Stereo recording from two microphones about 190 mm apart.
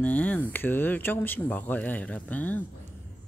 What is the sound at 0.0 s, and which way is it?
Speech, 10° left (ahead or behind).